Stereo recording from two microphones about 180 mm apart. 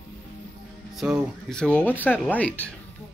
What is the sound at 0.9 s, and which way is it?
Speech, 5° right (ahead or behind).